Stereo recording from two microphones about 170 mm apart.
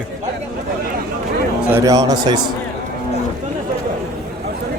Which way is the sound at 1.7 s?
20° right (ahead or behind).